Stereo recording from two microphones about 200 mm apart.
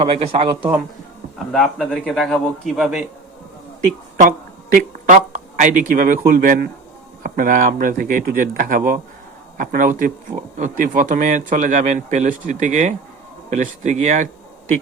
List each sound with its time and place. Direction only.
0.0 s speech: 30° right (ahead or behind)
1.5 s a man's voice: centre (ahead or behind)
4.2 s speech: 45° right (ahead or behind)